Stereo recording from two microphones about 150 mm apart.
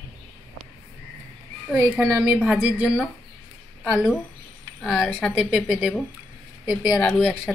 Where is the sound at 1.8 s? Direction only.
20° right (ahead or behind).